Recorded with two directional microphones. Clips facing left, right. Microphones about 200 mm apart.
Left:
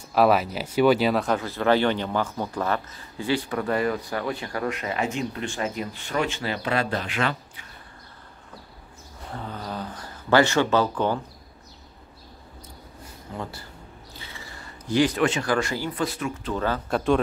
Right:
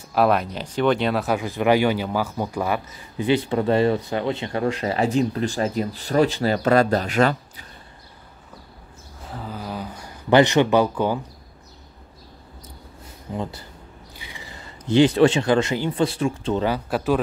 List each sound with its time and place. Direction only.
0.1 s speech: centre (ahead or behind)
1.4 s speech: 15° right (ahead or behind); by 7.6 s 40° right (ahead or behind)
9.2 s speech: 5° right (ahead or behind)
13.3 s speech: 20° right (ahead or behind)
16.6 s speech: 10° right (ahead or behind)